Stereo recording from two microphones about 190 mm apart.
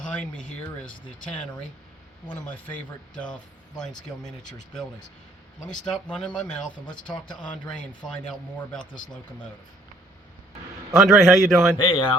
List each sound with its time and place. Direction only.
0.0 s speech: 5° left (ahead or behind)
3.2 s speech: 5° left (ahead or behind)
5.6 s speech: 5° left (ahead or behind)
7.3 s speech: 25° left (ahead or behind)
8.0 s speech: 5° left (ahead or behind)
11.0 s speech: centre (ahead or behind)
11.8 s speech: 25° left (ahead or behind)